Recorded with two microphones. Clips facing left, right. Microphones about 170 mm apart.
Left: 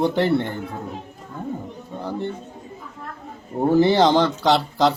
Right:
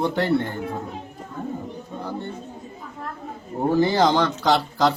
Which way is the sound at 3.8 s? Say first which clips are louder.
Left 3 dB; 25° left (ahead or behind).